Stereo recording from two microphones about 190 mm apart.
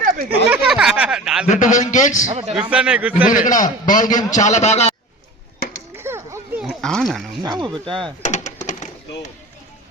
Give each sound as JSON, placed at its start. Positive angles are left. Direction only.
{"t": 0.3, "sound": "speech", "side_deg": -5}
{"t": 1.5, "sound": "a man's voice", "side_deg": 40}
{"t": 2.2, "sound": "a man's voice", "side_deg": -30}
{"t": 2.6, "sound": "a man's voice", "side_deg": -5}
{"t": 3.4, "sound": "a man's voice", "side_deg": 45}
{"t": 6.0, "sound": "children playing", "side_deg": -15}
{"t": 6.6, "sound": "a sound", "side_deg": 0}
{"t": 7.4, "sound": "speech", "side_deg": -20}
{"t": 8.2, "sound": "a sound", "side_deg": 40}